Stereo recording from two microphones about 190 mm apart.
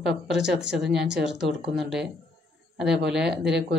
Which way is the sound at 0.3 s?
5° right (ahead or behind).